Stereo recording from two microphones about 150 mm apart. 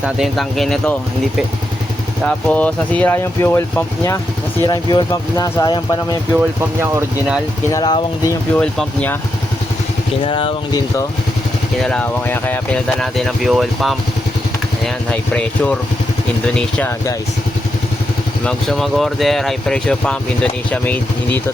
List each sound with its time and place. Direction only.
0.0 s speech: centre (ahead or behind)
2.2 s speech: 10° left (ahead or behind); by 6.1 s 30° left (ahead or behind)
6.3 s speech: 15° right (ahead or behind)
7.7 s speech: 30° left (ahead or behind)
8.5 s speech: 5° left (ahead or behind)
10.2 s speech: 35° left (ahead or behind)
11.8 s speech: 5° left (ahead or behind)
15.1 s speech: 10° left (ahead or behind)
18.4 s speech: centre (ahead or behind)